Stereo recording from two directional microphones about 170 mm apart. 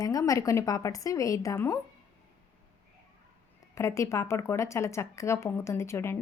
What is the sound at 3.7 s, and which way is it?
A woman's voice, 15° left (ahead or behind).